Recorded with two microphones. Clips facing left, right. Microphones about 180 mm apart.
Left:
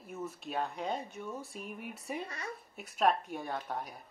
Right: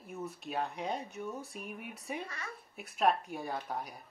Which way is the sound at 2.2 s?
20° left (ahead or behind).